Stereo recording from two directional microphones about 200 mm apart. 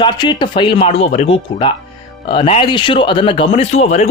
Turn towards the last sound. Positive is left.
turn(degrees=35)  # may be behind; listen again after turning